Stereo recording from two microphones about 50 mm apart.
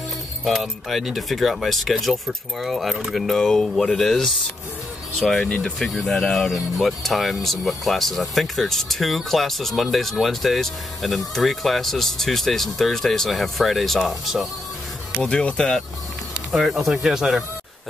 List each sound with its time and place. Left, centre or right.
0.5 s speech: centre
5.4 s speech: centre
5.8 s speech: centre
15.2 s speech: left
16.5 s speech: centre